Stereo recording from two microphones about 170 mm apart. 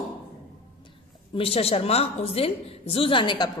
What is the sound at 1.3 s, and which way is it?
A woman's voice, 35° left (ahead or behind).